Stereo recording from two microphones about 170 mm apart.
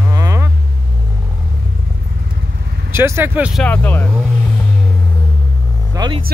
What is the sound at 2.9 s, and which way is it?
Speech, 15° right (ahead or behind).